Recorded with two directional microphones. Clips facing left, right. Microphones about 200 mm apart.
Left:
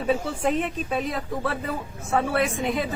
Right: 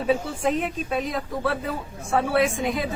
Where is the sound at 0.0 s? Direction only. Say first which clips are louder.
Right 1 dB; centre (ahead or behind).